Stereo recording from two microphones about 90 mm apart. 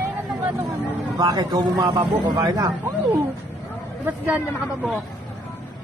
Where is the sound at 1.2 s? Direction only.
50° right (ahead or behind).